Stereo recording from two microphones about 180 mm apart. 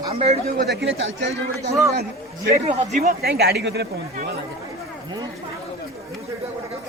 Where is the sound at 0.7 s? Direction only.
80° right.